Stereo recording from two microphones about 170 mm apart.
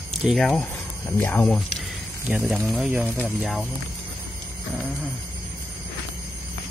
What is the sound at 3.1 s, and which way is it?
Speech, 10° left (ahead or behind).